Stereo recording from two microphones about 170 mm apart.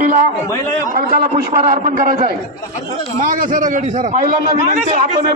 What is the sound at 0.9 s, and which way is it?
A man's voice, 55° right (ahead or behind).